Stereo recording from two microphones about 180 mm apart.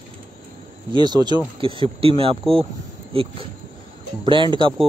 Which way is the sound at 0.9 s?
25° right (ahead or behind).